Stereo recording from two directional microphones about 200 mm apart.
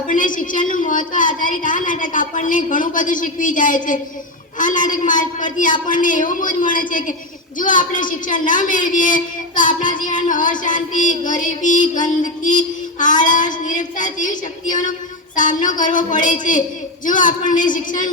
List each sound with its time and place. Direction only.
0.1 s a woman's voice: 40° left (ahead or behind)